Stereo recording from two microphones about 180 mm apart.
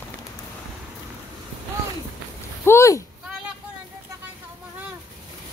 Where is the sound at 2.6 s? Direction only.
15° left (ahead or behind).